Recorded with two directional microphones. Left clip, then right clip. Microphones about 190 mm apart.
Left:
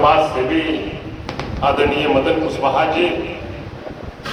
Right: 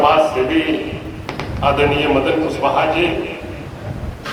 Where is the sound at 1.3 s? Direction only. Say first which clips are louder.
Even; 55° left (ahead or behind).